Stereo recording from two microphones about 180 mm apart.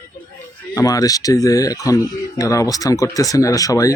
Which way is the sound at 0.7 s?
20° left (ahead or behind).